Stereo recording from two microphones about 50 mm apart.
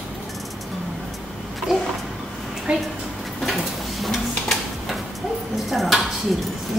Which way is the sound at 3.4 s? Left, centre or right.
Centre.